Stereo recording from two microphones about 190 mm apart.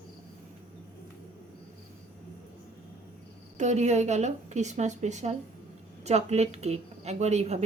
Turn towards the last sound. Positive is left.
turn(degrees=-35)  # may be behind; listen again after turning